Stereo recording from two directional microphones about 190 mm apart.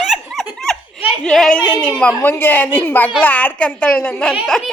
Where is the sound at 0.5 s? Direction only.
Centre (ahead or behind).